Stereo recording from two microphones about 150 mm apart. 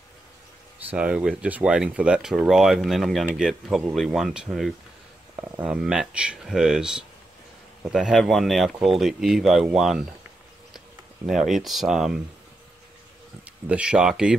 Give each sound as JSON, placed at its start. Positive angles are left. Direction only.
{"t": 0.8, "sound": "speech", "side_deg": -10}
{"t": 5.3, "sound": "a sound", "side_deg": -15}
{"t": 5.7, "sound": "speech", "side_deg": -5}
{"t": 11.2, "sound": "speech", "side_deg": 0}
{"t": 13.7, "sound": "speech", "side_deg": -5}